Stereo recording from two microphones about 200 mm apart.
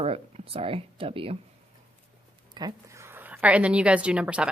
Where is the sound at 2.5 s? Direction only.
20° right (ahead or behind).